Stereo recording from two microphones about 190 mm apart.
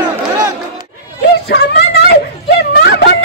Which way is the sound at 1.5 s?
60° left (ahead or behind).